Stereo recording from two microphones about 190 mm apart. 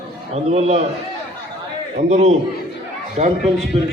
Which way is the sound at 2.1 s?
35° right (ahead or behind).